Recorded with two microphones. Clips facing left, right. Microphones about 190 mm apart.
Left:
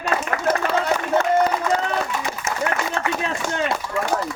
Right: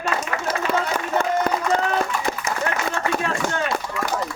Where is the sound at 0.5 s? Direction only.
55° left (ahead or behind).